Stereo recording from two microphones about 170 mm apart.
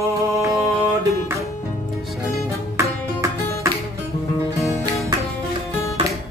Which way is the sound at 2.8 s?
15° right (ahead or behind).